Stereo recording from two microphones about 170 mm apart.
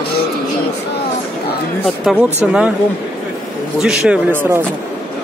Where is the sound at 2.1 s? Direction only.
15° left (ahead or behind).